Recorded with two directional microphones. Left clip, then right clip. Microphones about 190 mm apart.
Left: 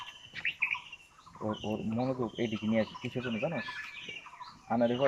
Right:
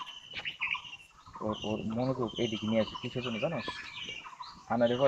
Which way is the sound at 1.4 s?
10° left (ahead or behind).